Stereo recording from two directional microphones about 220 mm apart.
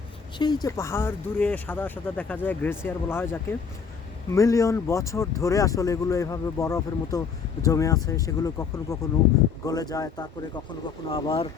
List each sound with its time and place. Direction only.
0.3 s speech: 20° left (ahead or behind)